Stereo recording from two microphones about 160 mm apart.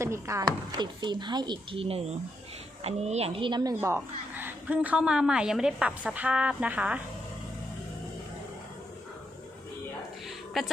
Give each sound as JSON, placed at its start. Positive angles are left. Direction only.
{"t": 0.0, "sound": "a woman's voice", "side_deg": -15}
{"t": 3.8, "sound": "a woman's voice", "side_deg": -15}
{"t": 10.2, "sound": "a sound", "side_deg": 0}